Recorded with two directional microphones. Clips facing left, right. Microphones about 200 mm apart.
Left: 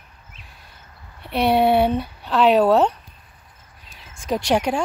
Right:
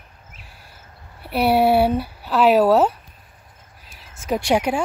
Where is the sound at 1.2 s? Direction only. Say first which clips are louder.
Right 1 dB; 5° right (ahead or behind).